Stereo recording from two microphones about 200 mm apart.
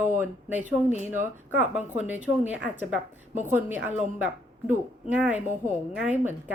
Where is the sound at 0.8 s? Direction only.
35° left (ahead or behind).